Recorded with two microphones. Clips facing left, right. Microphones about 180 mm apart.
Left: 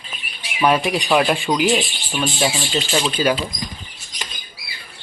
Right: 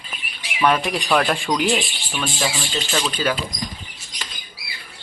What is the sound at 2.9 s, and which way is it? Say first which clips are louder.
Speech: left 3 dB; 15° left (ahead or behind).